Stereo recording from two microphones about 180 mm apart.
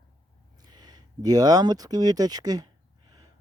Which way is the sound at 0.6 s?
25° right (ahead or behind).